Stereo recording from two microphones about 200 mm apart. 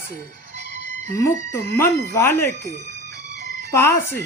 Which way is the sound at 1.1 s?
15° left (ahead or behind).